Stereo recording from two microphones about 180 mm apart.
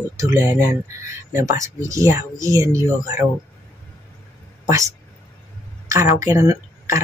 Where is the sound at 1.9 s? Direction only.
15° right (ahead or behind).